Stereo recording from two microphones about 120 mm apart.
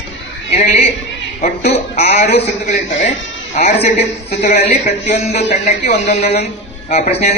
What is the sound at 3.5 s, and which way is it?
Speech, 65° left (ahead or behind).